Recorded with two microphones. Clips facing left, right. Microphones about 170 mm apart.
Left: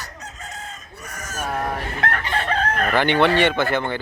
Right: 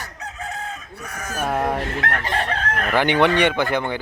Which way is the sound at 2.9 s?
15° right (ahead or behind).